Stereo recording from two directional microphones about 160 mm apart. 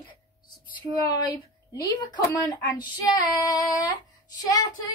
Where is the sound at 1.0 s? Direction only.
25° left (ahead or behind).